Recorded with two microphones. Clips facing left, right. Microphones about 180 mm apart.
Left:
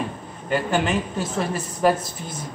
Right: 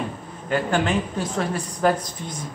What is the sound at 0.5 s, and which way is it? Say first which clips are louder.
A man's voice: even; 5° left (ahead or behind).